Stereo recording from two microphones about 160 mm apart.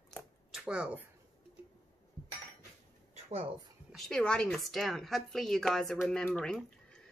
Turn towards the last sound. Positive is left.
turn(degrees=5)  # may be behind; listen again after turning